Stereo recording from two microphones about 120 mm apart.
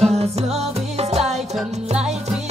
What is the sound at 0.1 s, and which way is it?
Music, 60° right (ahead or behind).